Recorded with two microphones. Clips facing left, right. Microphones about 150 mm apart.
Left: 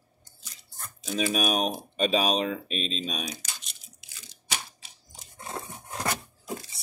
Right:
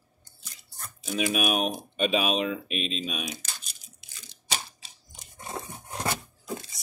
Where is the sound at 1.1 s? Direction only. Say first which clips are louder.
Even; 35° left (ahead or behind).